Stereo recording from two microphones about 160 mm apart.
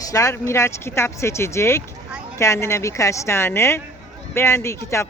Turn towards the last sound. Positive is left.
turn(degrees=15)  # may be behind; listen again after turning